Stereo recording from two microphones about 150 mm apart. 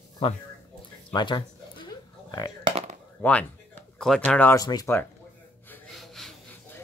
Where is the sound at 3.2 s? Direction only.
10° left (ahead or behind).